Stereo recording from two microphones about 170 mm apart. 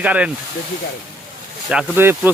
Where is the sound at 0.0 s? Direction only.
10° right (ahead or behind).